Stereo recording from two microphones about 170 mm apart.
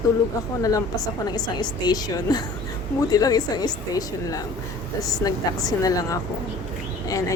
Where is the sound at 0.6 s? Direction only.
20° left (ahead or behind).